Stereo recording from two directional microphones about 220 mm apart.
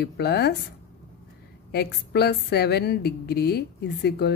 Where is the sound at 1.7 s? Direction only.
45° left (ahead or behind).